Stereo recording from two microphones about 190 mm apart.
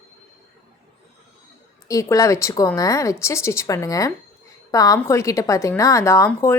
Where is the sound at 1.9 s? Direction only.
15° left (ahead or behind).